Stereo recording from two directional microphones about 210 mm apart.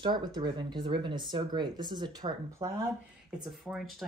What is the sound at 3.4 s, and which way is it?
Speech, centre (ahead or behind).